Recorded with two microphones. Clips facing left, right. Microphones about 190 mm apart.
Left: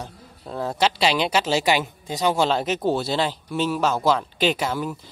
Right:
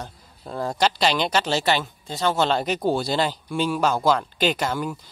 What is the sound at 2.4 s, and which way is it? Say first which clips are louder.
Speech: even; centre (ahead or behind).